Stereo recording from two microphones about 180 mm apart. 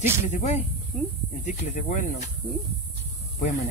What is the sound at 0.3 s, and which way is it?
Speech, 40° left (ahead or behind).